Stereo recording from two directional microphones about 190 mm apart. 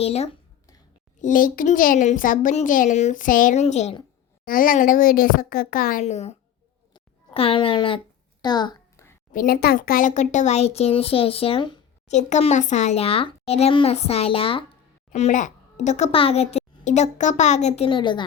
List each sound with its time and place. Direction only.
0.0 s a child's voice: 35° left (ahead or behind)
1.2 s a woman's voice: 45° left (ahead or behind)
4.4 s a woman's voice: 45° left (ahead or behind)
6.9 s a sound: 25° left (ahead or behind)
9.3 s a child's voice: 50° left (ahead or behind); by 11.8 s 25° left (ahead or behind)
12.0 s a child's voice: 35° left (ahead or behind)